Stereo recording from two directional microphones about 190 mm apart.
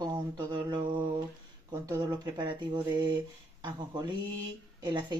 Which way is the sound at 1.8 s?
20° right (ahead or behind).